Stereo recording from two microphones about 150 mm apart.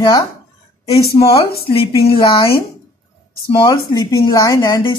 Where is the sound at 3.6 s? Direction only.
25° left (ahead or behind).